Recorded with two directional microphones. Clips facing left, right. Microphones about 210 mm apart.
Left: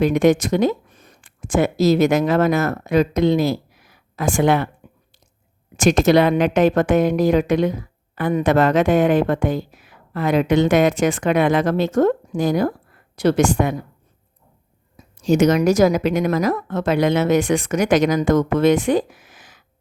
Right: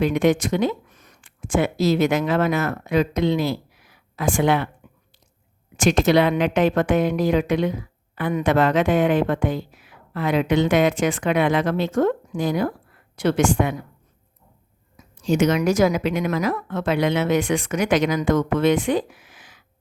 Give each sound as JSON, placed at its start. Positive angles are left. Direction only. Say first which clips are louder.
{"t": 0.0, "sound": "speech", "louder": "left 3 dB", "side_deg": 40}
{"t": 5.7, "sound": "a woman's voice", "louder": "left 3 dB", "side_deg": 45}
{"t": 14.9, "sound": "speech", "louder": "left 4 dB", "side_deg": 40}